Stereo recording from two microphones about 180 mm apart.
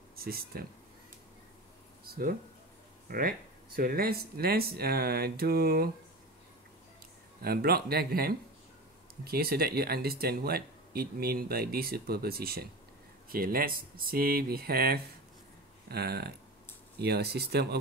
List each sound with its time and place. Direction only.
0.1 s speech: 55° right (ahead or behind)
2.0 s a sound: 50° right (ahead or behind)
3.1 s speech: 55° right (ahead or behind)
7.4 s speech: 60° right (ahead or behind)